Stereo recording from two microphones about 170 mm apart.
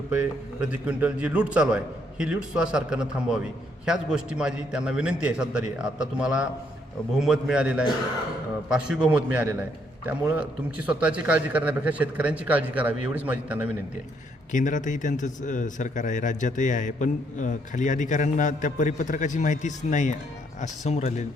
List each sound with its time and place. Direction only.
0.1 s a man's voice: 10° right (ahead or behind)
14.5 s a man's voice: 50° left (ahead or behind)